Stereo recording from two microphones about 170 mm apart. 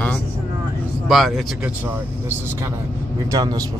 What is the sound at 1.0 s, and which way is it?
Speech, centre (ahead or behind).